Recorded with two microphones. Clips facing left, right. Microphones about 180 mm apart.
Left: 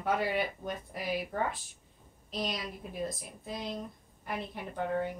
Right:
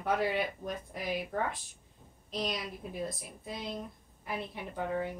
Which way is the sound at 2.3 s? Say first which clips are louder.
Even; centre (ahead or behind).